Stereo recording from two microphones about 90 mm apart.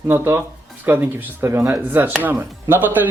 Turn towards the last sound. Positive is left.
turn(degrees=-20)  # may be behind; listen again after turning